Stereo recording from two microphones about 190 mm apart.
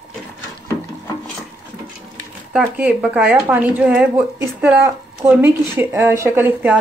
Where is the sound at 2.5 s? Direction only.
5° right (ahead or behind).